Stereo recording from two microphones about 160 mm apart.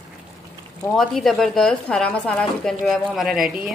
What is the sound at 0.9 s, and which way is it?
A woman's voice, centre (ahead or behind).